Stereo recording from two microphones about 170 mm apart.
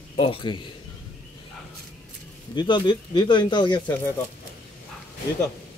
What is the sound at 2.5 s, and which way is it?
Speech, 25° left (ahead or behind).